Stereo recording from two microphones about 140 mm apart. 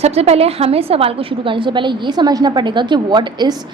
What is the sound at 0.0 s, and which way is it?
A woman's voice, 50° right (ahead or behind).